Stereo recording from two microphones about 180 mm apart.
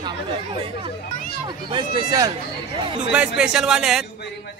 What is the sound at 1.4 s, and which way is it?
Speech, 25° right (ahead or behind).